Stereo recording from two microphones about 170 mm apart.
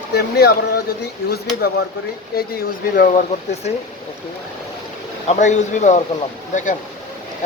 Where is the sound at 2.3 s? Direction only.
65° left (ahead or behind).